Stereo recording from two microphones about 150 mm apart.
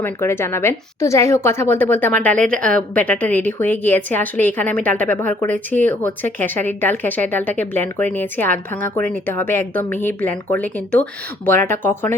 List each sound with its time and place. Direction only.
0.0 s a woman's voice: 15° left (ahead or behind)